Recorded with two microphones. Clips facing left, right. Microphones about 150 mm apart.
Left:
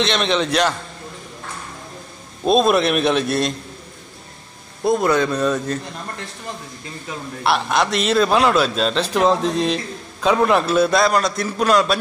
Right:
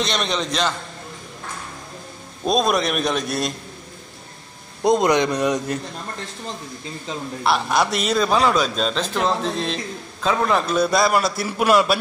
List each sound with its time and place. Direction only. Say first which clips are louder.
0.0 s a man's voice: left 4 dB; centre (ahead or behind)
2.4 s a man's voice: left 4 dB; centre (ahead or behind)
4.8 s a man's voice: even; 20° right (ahead or behind)
7.4 s a man's voice: left 1 dB; centre (ahead or behind)
9.0 s a man's voice: left 5 dB; 15° left (ahead or behind); by 12.0 s 5° right (ahead or behind)